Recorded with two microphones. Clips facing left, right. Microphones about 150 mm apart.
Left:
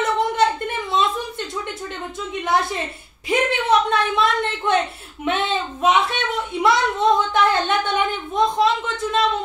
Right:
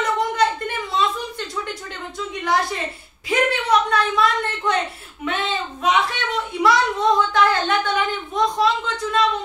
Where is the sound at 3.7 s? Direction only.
25° left (ahead or behind).